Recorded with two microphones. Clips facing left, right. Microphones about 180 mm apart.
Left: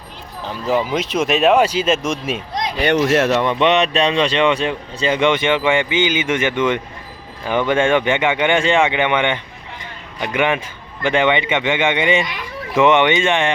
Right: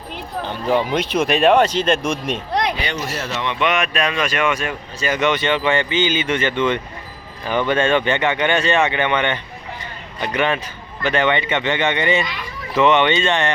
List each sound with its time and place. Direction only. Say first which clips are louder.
0.7 s speech: even; 5° left (ahead or behind)
2.5 s a sound: right 4 dB; 65° right (ahead or behind)
2.8 s speech: left 11 dB; 75° left (ahead or behind)
3.4 s speech: left 5 dB; 40° left (ahead or behind)
3.9 s speech: left 4 dB; 25° left (ahead or behind)
5.5 s speech: left 2 dB; 10° left (ahead or behind)